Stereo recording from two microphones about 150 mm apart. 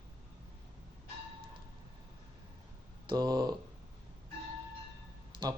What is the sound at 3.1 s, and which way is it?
Speech, 30° right (ahead or behind).